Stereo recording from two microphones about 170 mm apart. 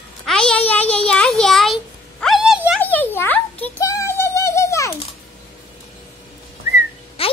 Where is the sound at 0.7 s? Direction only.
10° left (ahead or behind).